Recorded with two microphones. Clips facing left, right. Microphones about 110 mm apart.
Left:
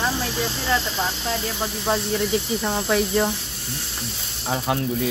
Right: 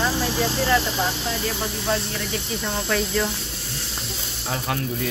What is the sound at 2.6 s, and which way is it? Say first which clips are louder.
Speech: left 3 dB; 20° left (ahead or behind).